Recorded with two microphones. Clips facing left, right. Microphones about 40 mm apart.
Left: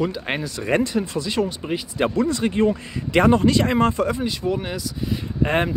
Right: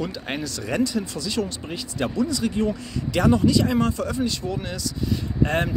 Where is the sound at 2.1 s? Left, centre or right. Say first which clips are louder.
Even; left.